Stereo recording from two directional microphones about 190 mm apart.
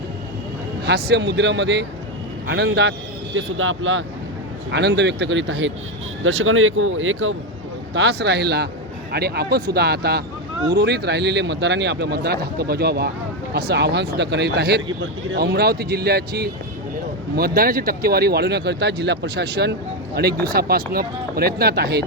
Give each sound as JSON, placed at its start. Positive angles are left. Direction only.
{"t": 0.9, "sound": "speech", "side_deg": -60}
{"t": 3.3, "sound": "speech", "side_deg": -90}
{"t": 4.7, "sound": "speech", "side_deg": -65}
{"t": 6.2, "sound": "speech", "side_deg": -90}
{"t": 7.9, "sound": "speech", "side_deg": -65}